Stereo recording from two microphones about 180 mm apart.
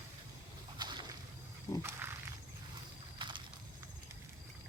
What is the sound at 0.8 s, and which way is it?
Boat, 25° right (ahead or behind).